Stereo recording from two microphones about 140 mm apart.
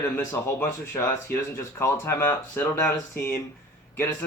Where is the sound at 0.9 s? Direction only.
20° left (ahead or behind).